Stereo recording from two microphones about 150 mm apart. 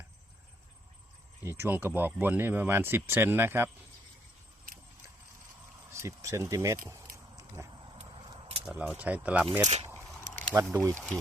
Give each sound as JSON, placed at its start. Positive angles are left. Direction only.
{"t": 1.5, "sound": "speech", "side_deg": -15}
{"t": 5.9, "sound": "speech", "side_deg": -20}
{"t": 7.3, "sound": "biting", "side_deg": -20}
{"t": 8.2, "sound": "keys jangling", "side_deg": -35}
{"t": 8.6, "sound": "speech", "side_deg": -5}
{"t": 9.6, "sound": "speech", "side_deg": -45}
{"t": 10.5, "sound": "speech", "side_deg": -20}
{"t": 10.9, "sound": "speech", "side_deg": 10}